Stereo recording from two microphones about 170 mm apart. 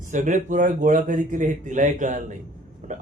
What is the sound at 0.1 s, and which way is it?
A man's voice, 45° right (ahead or behind).